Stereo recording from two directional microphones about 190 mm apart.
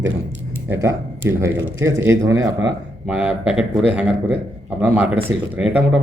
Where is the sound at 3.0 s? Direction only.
5° right (ahead or behind).